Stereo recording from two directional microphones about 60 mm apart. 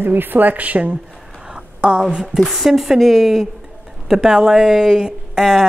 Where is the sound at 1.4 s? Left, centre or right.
Centre.